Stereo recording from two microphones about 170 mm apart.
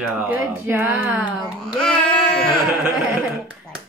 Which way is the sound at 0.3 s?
15° right (ahead or behind).